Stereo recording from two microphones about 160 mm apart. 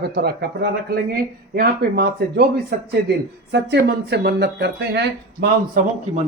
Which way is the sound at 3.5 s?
90° right.